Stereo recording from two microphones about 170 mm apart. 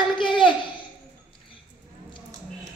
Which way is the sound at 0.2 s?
30° left (ahead or behind).